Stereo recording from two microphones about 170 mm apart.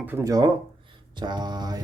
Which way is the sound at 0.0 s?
15° right (ahead or behind).